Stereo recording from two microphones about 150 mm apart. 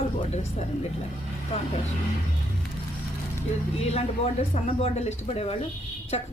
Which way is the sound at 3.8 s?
45° left (ahead or behind).